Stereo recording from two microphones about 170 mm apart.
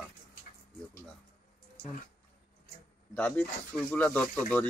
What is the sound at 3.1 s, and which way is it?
Speech, 10° left (ahead or behind).